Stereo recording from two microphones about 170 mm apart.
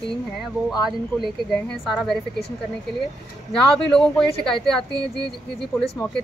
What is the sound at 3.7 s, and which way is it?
Speech, 5° left (ahead or behind).